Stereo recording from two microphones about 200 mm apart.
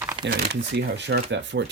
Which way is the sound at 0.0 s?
15° right (ahead or behind).